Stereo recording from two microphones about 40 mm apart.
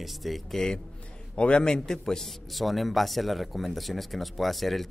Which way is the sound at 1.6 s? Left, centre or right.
Centre.